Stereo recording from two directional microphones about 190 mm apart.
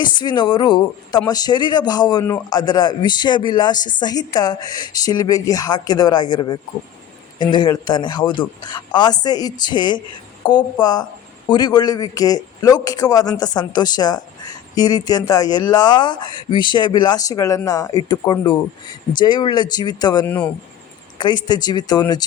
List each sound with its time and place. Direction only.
0.2 s speech: 25° left (ahead or behind)
20.2 s speech: 10° left (ahead or behind)
21.4 s speech: 20° left (ahead or behind)